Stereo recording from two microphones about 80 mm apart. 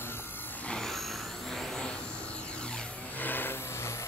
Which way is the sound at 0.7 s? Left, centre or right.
Centre.